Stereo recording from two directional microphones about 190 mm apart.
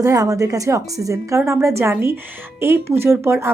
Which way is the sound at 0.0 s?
15° right (ahead or behind).